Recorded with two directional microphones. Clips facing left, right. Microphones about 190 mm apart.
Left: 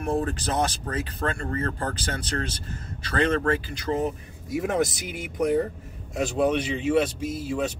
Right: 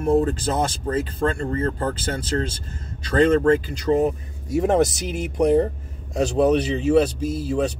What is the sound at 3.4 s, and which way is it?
Speech, 30° right (ahead or behind).